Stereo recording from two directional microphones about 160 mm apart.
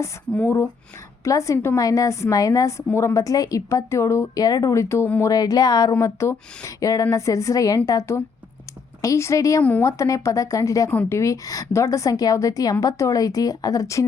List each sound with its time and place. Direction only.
0.0 s a woman's voice: 15° left (ahead or behind)